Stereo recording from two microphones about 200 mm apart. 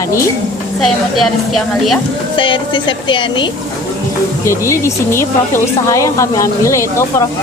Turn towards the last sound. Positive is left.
turn(degrees=15)  # may be behind; listen again after turning